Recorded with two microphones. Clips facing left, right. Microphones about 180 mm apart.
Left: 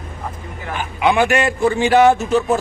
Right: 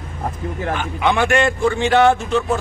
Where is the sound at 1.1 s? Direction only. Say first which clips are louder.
Left 1 dB; 10° left (ahead or behind).